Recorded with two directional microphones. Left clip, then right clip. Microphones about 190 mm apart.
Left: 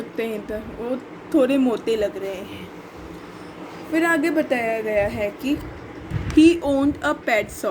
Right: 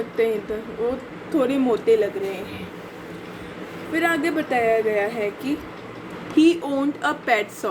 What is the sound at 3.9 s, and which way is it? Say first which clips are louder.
A woman's voice: left 2 dB; 30° left (ahead or behind).